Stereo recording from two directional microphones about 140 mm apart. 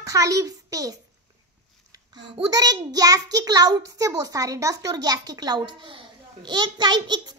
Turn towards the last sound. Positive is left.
turn(degrees=-30)  # may be behind; listen again after turning